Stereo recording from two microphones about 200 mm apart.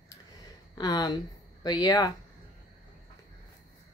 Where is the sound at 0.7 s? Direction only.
20° left (ahead or behind).